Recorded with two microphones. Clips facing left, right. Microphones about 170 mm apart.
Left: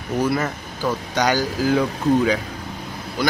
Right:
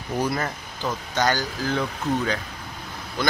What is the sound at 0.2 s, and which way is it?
A man's voice, 5° left (ahead or behind).